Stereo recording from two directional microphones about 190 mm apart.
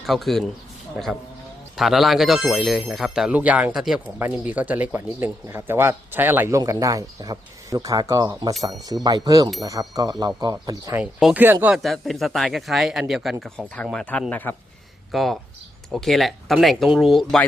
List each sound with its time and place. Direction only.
0.0 s speech: centre (ahead or behind)
1.7 s speech: centre (ahead or behind); by 11.0 s 20° right (ahead or behind)
11.0 s speech: 5° right (ahead or behind)